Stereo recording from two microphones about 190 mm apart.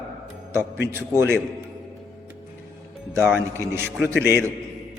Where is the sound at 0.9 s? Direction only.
15° right (ahead or behind).